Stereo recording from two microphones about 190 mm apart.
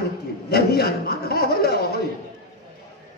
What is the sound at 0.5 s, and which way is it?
A man's voice, 55° left (ahead or behind).